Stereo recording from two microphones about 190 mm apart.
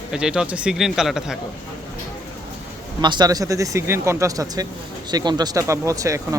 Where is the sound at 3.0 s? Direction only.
20° right (ahead or behind).